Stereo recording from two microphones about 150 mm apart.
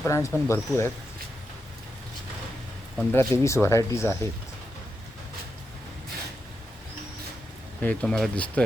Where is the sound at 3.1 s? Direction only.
20° left (ahead or behind).